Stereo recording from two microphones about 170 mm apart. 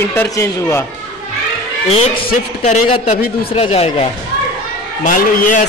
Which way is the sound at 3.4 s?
35° left (ahead or behind).